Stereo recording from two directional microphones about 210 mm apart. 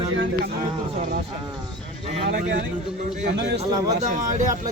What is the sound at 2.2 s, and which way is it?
Speech, 55° right (ahead or behind).